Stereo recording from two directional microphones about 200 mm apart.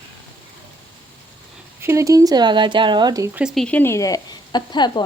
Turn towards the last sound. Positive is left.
turn(degrees=20)  # may be behind; listen again after turning